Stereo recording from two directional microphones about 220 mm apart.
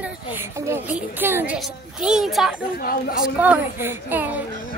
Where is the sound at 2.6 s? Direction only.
40° left (ahead or behind).